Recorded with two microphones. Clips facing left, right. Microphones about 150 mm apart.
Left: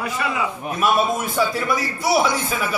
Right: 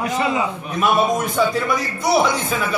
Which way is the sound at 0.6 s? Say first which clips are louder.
Right 1 dB; 5° left (ahead or behind).